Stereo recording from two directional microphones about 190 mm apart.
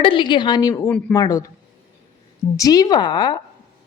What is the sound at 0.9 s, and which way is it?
Speech, 5° left (ahead or behind).